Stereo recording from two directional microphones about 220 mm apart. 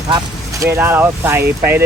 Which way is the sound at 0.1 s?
15° right (ahead or behind).